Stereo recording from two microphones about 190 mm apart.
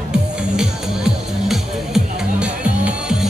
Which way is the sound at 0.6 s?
5° right (ahead or behind).